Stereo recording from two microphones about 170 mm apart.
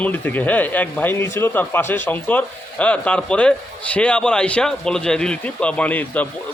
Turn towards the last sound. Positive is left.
turn(degrees=10)  # may be behind; listen again after turning